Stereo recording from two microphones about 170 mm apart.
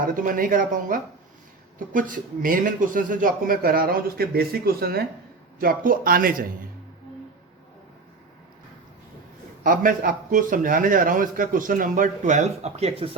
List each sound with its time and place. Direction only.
0.0 s a man's voice: 55° right (ahead or behind)
9.6 s a man's voice: 55° right (ahead or behind); by 13.1 s 40° right (ahead or behind)